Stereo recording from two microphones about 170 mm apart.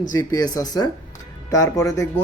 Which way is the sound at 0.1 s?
20° left (ahead or behind).